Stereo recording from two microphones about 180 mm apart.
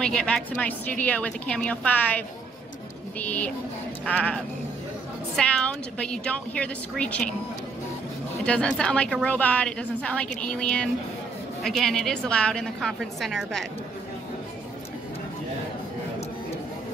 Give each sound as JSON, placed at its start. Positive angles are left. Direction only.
{"t": 0.0, "sound": "a woman's voice", "side_deg": 5}
{"t": 8.5, "sound": "a woman's voice", "side_deg": 5}